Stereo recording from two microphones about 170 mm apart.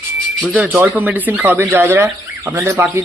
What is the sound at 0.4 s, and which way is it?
A man's voice, 5° right (ahead or behind).